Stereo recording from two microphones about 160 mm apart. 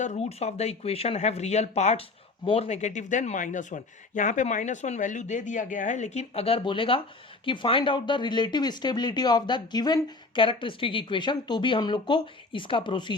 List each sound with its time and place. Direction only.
0.0 s speech: 45° left (ahead or behind)